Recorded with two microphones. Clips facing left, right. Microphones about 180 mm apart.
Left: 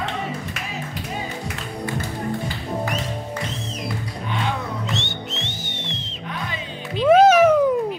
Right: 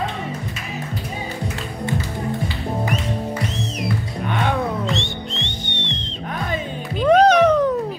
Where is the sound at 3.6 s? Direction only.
75° right (ahead or behind).